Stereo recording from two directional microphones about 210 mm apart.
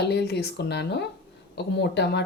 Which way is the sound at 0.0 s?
50° left (ahead or behind).